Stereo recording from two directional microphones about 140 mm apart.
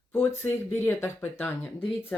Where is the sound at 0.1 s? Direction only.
15° left (ahead or behind).